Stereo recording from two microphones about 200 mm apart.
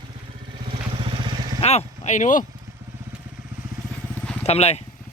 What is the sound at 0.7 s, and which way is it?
Vehicle, 25° right (ahead or behind).